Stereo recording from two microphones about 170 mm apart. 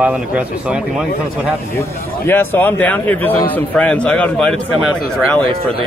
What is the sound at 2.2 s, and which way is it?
Speech, 10° left (ahead or behind).